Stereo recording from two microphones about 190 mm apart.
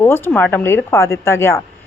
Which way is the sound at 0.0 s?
10° left (ahead or behind).